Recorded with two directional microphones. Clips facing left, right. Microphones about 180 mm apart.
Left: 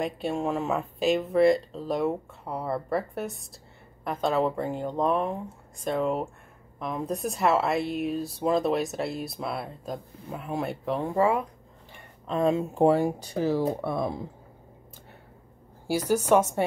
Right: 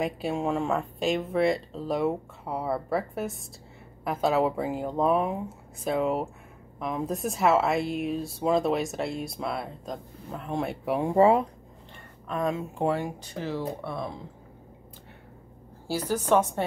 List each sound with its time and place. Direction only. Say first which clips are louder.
0.0 s speech: even; centre (ahead or behind)
11.1 s speech: right 5 dB; 25° right (ahead or behind)
12.3 s speech: left 4 dB; 30° left (ahead or behind); by 14.1 s 45° left (ahead or behind)
16.1 s a woman's voice: left 2 dB; 10° left (ahead or behind)